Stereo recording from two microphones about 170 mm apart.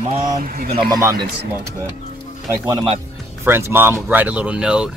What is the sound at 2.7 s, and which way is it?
Speech, 30° right (ahead or behind).